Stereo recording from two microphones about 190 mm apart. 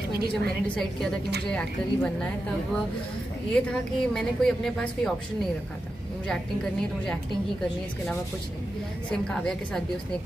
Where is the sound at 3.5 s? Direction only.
5° left (ahead or behind).